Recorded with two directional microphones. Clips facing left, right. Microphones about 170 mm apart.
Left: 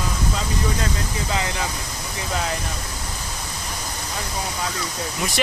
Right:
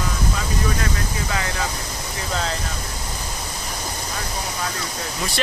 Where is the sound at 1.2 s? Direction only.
20° left (ahead or behind).